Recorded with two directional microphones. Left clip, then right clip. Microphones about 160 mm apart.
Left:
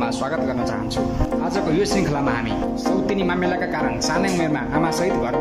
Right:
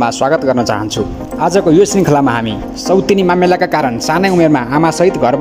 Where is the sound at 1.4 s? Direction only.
45° right (ahead or behind).